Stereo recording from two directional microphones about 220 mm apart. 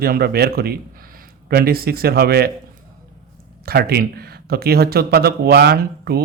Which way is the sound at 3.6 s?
45° right (ahead or behind).